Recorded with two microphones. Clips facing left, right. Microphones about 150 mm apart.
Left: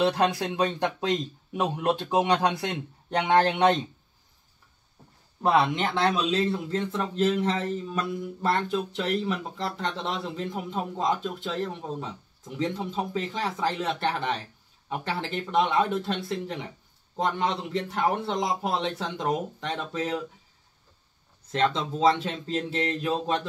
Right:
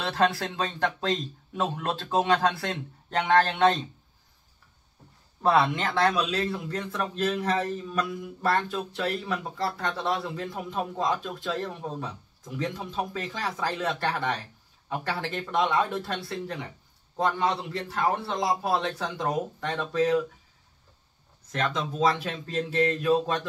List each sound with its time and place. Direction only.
0.0 s a man's voice: 15° left (ahead or behind)
5.4 s a man's voice: 15° left (ahead or behind)
12.5 s a man's voice: 25° left (ahead or behind)
17.7 s a man's voice: 20° left (ahead or behind)
21.5 s a man's voice: 25° left (ahead or behind)